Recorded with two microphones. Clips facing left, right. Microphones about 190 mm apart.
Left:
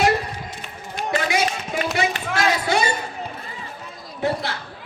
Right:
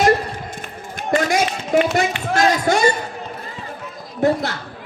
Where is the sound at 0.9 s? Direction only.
45° right (ahead or behind).